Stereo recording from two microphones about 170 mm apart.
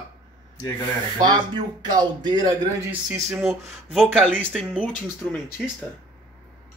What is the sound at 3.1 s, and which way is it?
Speech, 10° right (ahead or behind).